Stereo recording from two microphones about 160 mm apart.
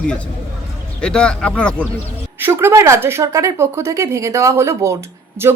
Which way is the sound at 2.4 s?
15° right (ahead or behind).